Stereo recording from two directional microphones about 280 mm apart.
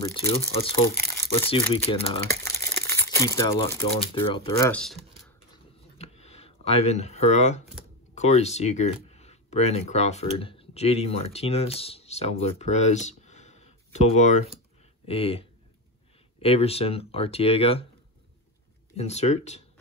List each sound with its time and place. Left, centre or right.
0.0 s speech: centre
5.9 s a sound: left
8.1 s speech: left
18.9 s speech: left